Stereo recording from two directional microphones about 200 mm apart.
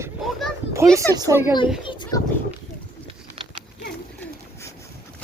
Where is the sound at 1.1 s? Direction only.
15° right (ahead or behind).